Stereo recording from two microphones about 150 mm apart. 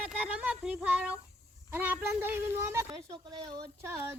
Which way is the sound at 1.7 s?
15° right (ahead or behind).